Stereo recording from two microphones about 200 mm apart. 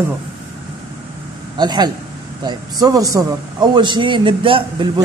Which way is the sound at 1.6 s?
20° right (ahead or behind).